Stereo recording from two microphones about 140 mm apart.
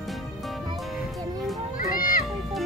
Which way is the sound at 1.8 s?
90° left.